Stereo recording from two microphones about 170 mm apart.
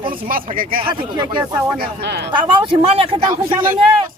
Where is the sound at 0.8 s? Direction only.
25° right (ahead or behind).